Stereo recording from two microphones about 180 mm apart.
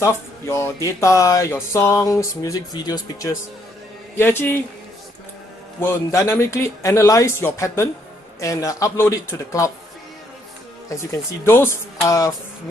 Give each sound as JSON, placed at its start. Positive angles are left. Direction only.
{"t": 0.0, "sound": "speech", "side_deg": 15}
{"t": 5.8, "sound": "speech", "side_deg": 15}
{"t": 10.9, "sound": "speech", "side_deg": 15}